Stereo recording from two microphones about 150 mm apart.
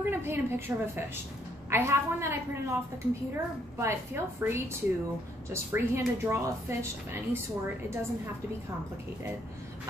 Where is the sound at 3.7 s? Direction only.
20° right (ahead or behind).